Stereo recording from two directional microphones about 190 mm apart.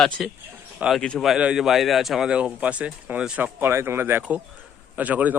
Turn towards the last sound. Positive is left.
turn(degrees=-10)  # may be behind; listen again after turning